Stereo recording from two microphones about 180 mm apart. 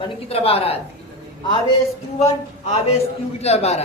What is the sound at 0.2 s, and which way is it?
Speech, 35° left (ahead or behind).